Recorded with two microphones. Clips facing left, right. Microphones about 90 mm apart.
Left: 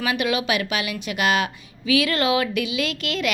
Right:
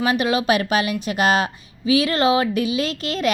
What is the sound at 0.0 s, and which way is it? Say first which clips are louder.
A woman's voice: right 4 dB; 35° right (ahead or behind).